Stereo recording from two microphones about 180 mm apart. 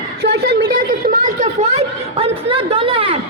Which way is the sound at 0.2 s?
65° right (ahead or behind).